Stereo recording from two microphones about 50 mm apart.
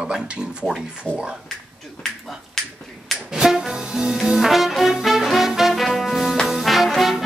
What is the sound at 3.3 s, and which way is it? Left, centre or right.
Brass instrument, centre.